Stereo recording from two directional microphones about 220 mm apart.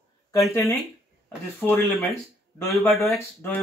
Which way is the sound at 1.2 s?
10° left (ahead or behind).